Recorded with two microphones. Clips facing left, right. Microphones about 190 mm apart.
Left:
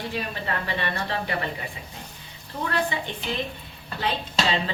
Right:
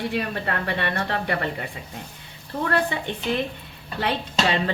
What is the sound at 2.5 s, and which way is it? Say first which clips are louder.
Speech: right 4 dB; 50° right (ahead or behind).